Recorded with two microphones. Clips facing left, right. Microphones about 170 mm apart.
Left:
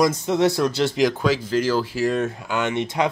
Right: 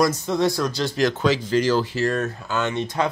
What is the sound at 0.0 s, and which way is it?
Speech, 20° left (ahead or behind).